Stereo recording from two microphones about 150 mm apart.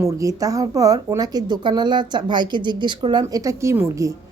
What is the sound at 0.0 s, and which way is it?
A woman's voice, 20° right (ahead or behind).